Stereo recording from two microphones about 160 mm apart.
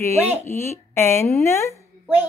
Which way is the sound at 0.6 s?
15° left (ahead or behind).